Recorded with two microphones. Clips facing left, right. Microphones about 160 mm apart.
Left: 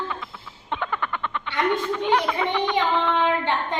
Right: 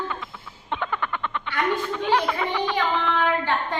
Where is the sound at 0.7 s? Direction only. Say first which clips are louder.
Even; centre (ahead or behind).